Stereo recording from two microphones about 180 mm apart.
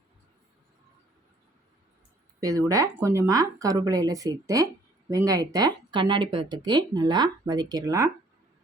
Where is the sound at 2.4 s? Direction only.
20° right (ahead or behind).